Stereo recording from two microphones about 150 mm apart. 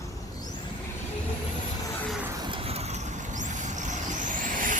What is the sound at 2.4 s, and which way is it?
Vehicle, 35° right (ahead or behind).